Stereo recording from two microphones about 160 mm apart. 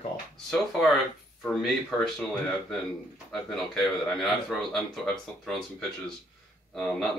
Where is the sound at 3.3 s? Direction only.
Centre (ahead or behind).